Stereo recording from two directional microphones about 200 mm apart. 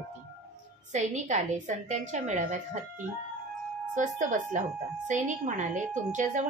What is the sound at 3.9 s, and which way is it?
A woman's voice, 40° right (ahead or behind).